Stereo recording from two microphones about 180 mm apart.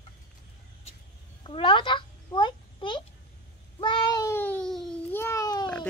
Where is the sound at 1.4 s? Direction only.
25° left (ahead or behind).